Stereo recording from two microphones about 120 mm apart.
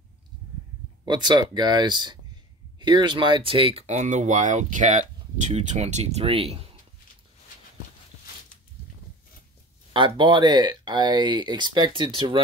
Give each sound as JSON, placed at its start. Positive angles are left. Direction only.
{"t": 1.0, "sound": "speech", "side_deg": -40}
{"t": 5.4, "sound": "speech", "side_deg": -75}
{"t": 6.2, "sound": "speech", "side_deg": -50}
{"t": 9.9, "sound": "speech", "side_deg": -45}